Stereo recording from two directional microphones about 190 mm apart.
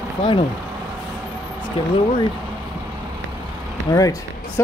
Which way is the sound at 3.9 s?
20° left (ahead or behind).